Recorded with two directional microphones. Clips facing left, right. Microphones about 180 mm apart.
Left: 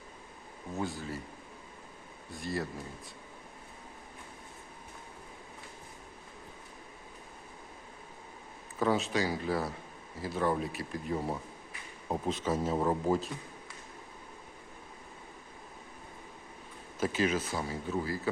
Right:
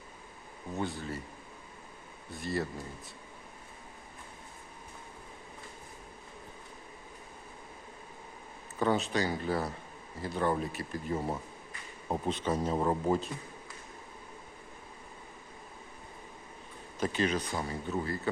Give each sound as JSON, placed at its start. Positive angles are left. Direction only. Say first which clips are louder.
{"t": 0.7, "sound": "a man's voice", "louder": "right 1 dB", "side_deg": 0}
{"t": 2.3, "sound": "a man's voice", "louder": "right 2 dB", "side_deg": 0}
{"t": 8.8, "sound": "a man's voice", "louder": "even", "side_deg": 0}
{"t": 17.0, "sound": "a man's voice", "louder": "left 1 dB", "side_deg": 5}